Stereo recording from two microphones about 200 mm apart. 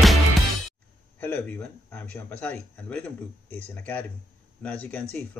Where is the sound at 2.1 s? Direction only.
5° left (ahead or behind).